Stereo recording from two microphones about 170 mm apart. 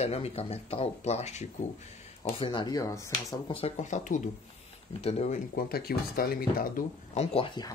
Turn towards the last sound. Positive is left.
turn(degrees=30)  # may be behind; listen again after turning